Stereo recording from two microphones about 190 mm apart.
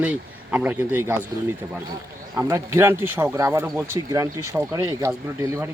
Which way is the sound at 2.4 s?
15° right (ahead or behind).